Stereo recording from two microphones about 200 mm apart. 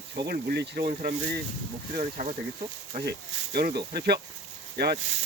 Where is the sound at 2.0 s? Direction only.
35° right (ahead or behind).